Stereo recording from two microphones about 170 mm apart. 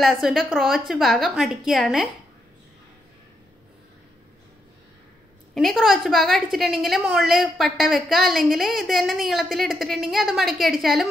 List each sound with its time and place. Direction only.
0.0 s a woman's voice: centre (ahead or behind)
5.5 s a woman's voice: 5° left (ahead or behind)